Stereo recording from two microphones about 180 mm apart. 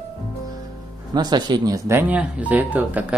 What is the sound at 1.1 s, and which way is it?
Speech, 25° right (ahead or behind).